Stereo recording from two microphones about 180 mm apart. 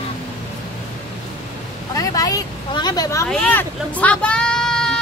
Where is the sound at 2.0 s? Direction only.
20° left (ahead or behind).